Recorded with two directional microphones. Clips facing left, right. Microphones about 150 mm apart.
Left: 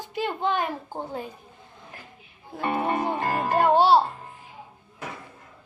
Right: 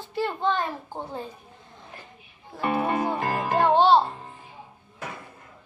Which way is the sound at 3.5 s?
10° left (ahead or behind).